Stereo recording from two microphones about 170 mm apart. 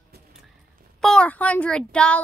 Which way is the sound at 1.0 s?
5° left (ahead or behind).